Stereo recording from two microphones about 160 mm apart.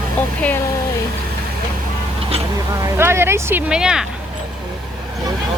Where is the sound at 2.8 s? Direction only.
15° right (ahead or behind).